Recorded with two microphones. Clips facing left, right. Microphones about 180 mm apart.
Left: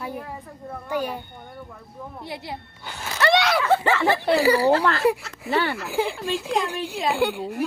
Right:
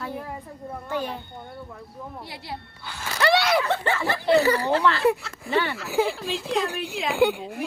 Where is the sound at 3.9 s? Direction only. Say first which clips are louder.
Left 3 dB; 90° left.